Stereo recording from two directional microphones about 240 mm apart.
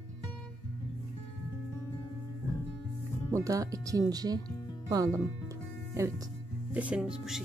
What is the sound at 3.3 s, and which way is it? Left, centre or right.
Speech, centre.